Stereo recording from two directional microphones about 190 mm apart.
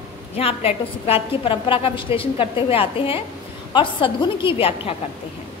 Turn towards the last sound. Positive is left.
turn(degrees=30)  # may be behind; listen again after turning